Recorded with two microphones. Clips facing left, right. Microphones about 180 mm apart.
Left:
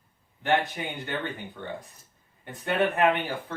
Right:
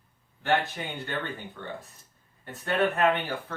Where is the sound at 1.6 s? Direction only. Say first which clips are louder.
Left 2 dB; 15° left (ahead or behind).